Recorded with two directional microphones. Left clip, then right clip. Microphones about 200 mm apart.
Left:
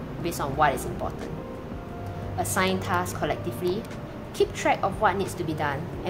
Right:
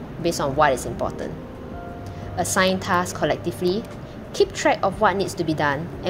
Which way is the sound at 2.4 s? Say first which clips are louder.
Right 5 dB; 30° right (ahead or behind).